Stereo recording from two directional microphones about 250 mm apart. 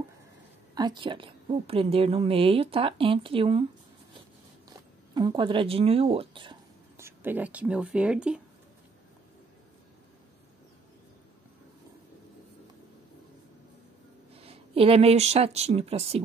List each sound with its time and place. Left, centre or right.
0.7 s a woman's voice: centre
4.6 s speech: centre
14.3 s speech: right